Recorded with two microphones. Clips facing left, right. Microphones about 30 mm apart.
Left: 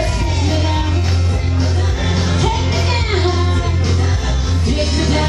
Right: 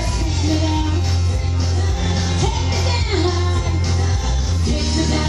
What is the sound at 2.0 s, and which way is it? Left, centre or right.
Music, left.